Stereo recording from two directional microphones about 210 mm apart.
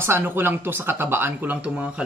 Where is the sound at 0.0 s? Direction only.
10° right (ahead or behind).